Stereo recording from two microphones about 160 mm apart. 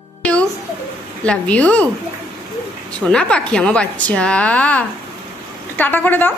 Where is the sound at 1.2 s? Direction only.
10° left (ahead or behind).